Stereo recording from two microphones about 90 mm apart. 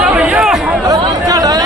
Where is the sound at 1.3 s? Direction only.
40° right (ahead or behind).